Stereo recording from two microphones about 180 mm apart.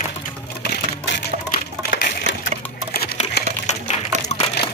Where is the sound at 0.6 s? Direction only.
75° left (ahead or behind).